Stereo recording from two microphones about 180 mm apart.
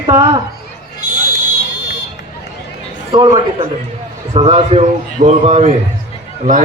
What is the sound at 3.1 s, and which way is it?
A man's voice, 25° right (ahead or behind).